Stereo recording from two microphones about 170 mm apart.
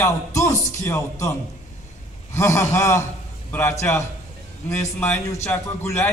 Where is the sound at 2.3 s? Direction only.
15° left (ahead or behind).